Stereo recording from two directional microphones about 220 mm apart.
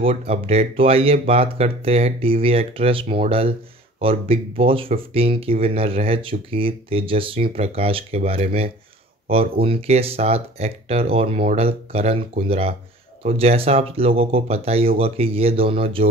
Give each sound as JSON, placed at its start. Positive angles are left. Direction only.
{"t": 0.0, "sound": "speech", "side_deg": -25}